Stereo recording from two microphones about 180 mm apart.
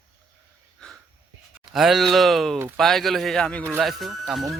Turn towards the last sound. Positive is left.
turn(degrees=0)  # may be behind; listen again after turning